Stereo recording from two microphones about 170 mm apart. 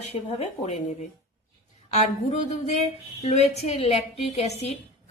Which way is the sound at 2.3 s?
40° left (ahead or behind).